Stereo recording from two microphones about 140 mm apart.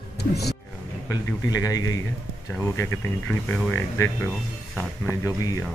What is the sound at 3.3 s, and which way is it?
Speech, 15° left (ahead or behind).